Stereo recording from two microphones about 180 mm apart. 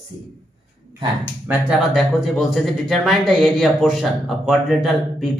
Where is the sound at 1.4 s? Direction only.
10° right (ahead or behind).